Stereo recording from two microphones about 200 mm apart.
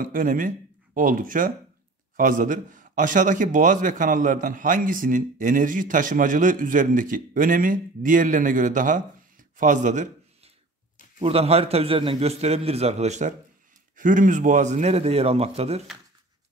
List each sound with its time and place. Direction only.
0.0 s a man's voice: 45° right (ahead or behind)